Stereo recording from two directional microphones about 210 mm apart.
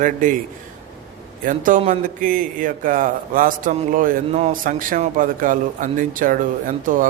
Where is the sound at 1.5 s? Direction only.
40° right (ahead or behind).